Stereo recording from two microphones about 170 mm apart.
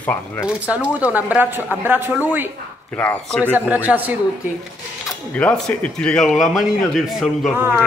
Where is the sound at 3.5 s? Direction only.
10° right (ahead or behind).